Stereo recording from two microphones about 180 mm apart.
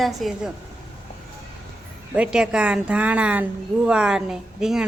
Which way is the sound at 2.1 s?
5° right (ahead or behind).